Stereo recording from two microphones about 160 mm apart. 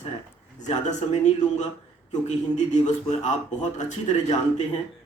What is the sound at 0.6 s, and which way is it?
A man's voice, 45° left (ahead or behind).